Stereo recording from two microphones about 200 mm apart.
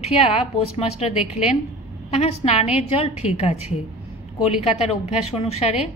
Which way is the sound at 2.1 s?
30° left (ahead or behind).